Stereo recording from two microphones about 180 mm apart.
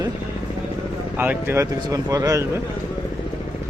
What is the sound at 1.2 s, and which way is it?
Speech, 10° right (ahead or behind).